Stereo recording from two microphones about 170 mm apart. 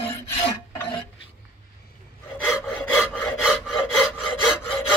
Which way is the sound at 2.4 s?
10° left (ahead or behind).